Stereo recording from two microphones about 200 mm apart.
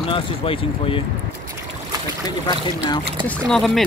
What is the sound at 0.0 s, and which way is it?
Speech, 25° left (ahead or behind).